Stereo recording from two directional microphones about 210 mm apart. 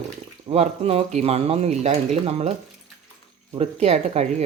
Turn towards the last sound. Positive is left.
turn(degrees=-30)  # may be behind; listen again after turning